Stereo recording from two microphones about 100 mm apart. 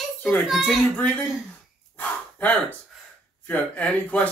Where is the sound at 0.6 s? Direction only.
15° left (ahead or behind).